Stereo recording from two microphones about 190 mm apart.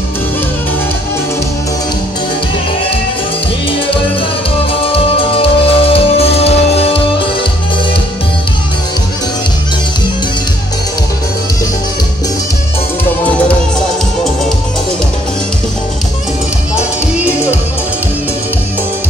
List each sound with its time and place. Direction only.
4.8 s music: 30° left (ahead or behind)
17.2 s music: 10° right (ahead or behind)